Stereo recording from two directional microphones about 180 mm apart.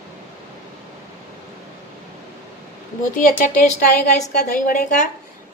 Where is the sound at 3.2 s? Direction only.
50° left (ahead or behind).